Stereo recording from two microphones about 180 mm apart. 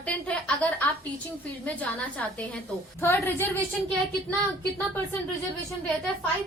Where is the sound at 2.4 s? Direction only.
10° left (ahead or behind).